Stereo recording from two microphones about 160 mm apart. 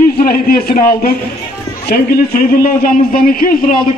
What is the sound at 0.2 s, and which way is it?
A man's voice, 70° left (ahead or behind).